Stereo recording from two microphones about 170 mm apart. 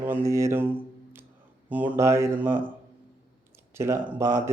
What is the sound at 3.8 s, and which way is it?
Speech, 15° right (ahead or behind).